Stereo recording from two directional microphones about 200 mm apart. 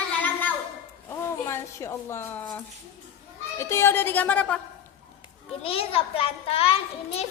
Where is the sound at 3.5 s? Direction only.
15° left (ahead or behind).